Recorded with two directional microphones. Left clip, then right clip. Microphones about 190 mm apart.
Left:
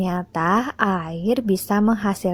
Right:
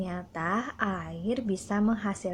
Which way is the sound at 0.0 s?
45° left (ahead or behind).